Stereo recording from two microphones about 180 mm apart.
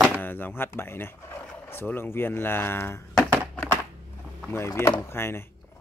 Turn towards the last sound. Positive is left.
turn(degrees=15)  # may be behind; listen again after turning